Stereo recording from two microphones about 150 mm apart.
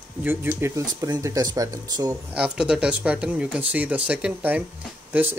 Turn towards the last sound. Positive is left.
turn(degrees=-10)  # may be behind; listen again after turning